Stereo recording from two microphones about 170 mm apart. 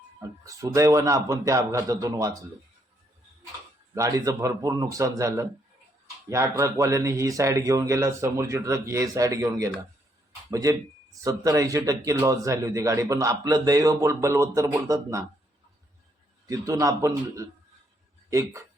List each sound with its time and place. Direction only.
0.4 s speech: 20° right (ahead or behind)
3.9 s speech: 20° right (ahead or behind)
16.5 s speech: 20° right (ahead or behind)